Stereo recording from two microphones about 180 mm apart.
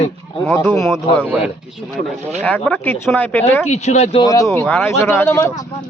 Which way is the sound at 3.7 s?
35° left (ahead or behind).